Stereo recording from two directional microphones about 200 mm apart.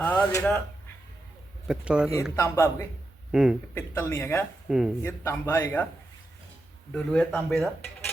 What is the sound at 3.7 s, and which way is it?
Speech, 10° left (ahead or behind).